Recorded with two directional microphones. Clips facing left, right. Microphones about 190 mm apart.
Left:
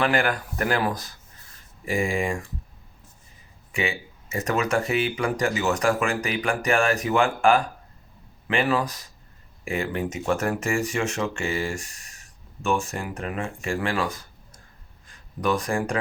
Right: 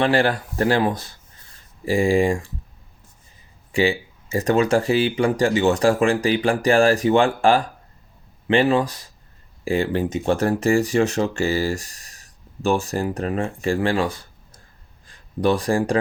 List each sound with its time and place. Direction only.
0.0 s speech: 30° right (ahead or behind)
3.7 s speech: 30° right (ahead or behind)